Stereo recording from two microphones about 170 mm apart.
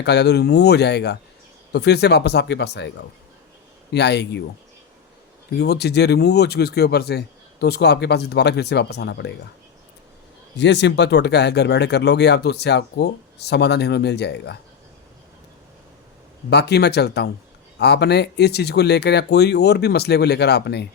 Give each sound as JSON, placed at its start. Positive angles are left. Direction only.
{"t": 0.0, "sound": "speech", "side_deg": 80}
{"t": 3.9, "sound": "speech", "side_deg": 85}
{"t": 5.5, "sound": "speech", "side_deg": 75}
{"t": 10.6, "sound": "speech", "side_deg": 90}
{"t": 16.5, "sound": "speech", "side_deg": 75}